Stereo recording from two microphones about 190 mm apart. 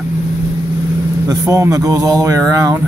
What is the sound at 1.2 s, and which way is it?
Speech, 15° right (ahead or behind).